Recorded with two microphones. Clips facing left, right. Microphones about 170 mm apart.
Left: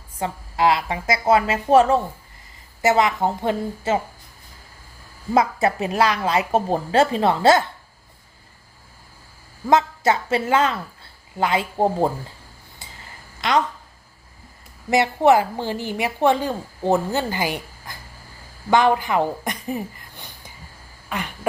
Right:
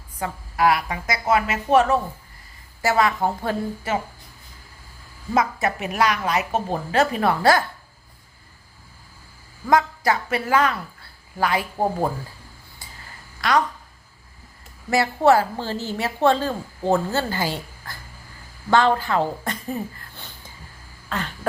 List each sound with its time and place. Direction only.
0.2 s a woman's voice: 25° left (ahead or behind)
5.3 s a woman's voice: 30° left (ahead or behind)
9.6 s a woman's voice: 25° left (ahead or behind)
12.8 s a sound: 20° left (ahead or behind)
13.4 s a woman's voice: 20° left (ahead or behind)
14.8 s a woman's voice: 20° left (ahead or behind)
21.1 s a sound: 15° left (ahead or behind)